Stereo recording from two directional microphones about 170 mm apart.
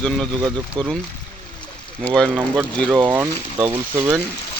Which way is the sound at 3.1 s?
10° right (ahead or behind).